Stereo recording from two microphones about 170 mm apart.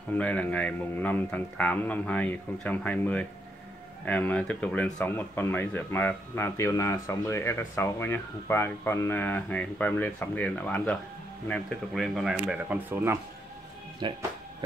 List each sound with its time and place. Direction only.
0.1 s speech: 10° left (ahead or behind); by 13.2 s 15° right (ahead or behind)
14.0 s speech: 30° right (ahead or behind)